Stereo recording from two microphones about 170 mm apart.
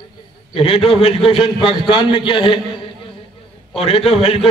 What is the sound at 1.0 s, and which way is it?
A man's voice, 35° left (ahead or behind).